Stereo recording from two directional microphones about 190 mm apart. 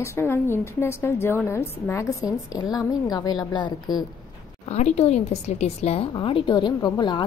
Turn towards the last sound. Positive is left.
turn(degrees=20)  # may be behind; listen again after turning